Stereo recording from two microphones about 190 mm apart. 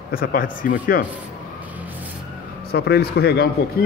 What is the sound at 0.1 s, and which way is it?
Speech, 50° left (ahead or behind).